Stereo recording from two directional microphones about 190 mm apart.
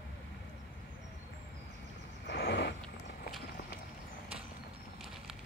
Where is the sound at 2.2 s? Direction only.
60° left (ahead or behind).